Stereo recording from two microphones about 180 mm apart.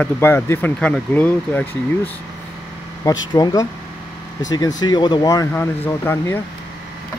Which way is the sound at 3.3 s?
20° left (ahead or behind).